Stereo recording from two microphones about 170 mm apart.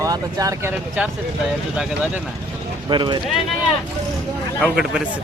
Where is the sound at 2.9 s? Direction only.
25° right (ahead or behind).